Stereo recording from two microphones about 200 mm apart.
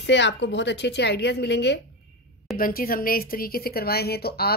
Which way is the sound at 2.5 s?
45° left (ahead or behind).